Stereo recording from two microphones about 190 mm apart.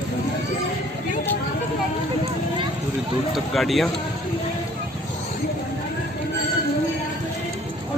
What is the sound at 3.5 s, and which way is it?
Speech, centre (ahead or behind).